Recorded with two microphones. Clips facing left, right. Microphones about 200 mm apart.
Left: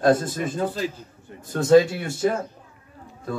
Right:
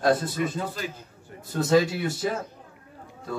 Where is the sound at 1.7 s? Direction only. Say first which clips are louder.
Left 6 dB; 50° left (ahead or behind).